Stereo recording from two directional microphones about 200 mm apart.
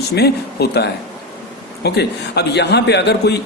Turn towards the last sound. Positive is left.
turn(degrees=55)  # may be behind; listen again after turning